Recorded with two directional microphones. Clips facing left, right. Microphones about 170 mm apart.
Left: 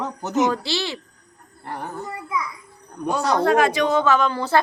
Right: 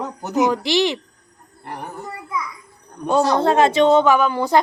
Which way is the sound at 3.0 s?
25° right (ahead or behind).